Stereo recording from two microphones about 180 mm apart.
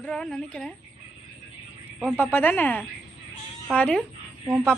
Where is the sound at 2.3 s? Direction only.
10° left (ahead or behind).